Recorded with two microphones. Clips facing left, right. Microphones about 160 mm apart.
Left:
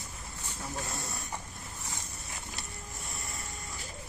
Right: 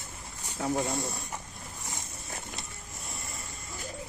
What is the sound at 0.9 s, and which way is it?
Speech, centre (ahead or behind).